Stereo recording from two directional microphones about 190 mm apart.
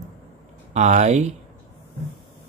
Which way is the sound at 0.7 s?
35° right (ahead or behind).